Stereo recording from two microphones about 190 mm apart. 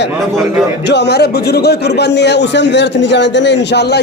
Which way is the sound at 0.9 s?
65° left (ahead or behind).